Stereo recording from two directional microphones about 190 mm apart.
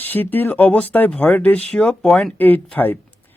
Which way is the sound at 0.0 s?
10° left (ahead or behind).